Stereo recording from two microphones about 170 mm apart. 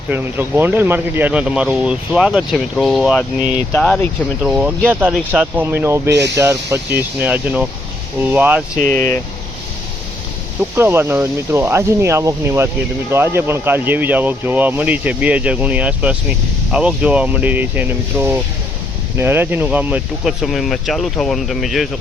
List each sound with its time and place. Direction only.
0.1 s speech: 10° right (ahead or behind); by 4.1 s 5° left (ahead or behind)
4.4 s speech: 5° right (ahead or behind)
6.1 s speech: 90° right
6.3 s speech: 15° right (ahead or behind)
8.9 s speech: 10° left (ahead or behind)
10.6 s speech: 15° right (ahead or behind)